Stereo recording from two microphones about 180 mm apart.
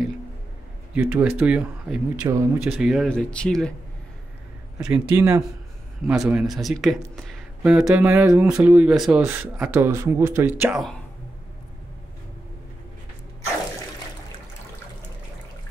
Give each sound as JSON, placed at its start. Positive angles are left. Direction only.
{"t": 0.9, "sound": "speech", "side_deg": -10}
{"t": 2.8, "sound": "speech", "side_deg": 0}
{"t": 4.7, "sound": "speech", "side_deg": -5}